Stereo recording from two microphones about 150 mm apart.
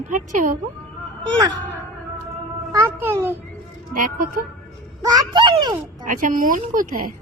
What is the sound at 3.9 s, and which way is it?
Speech, 65° right (ahead or behind).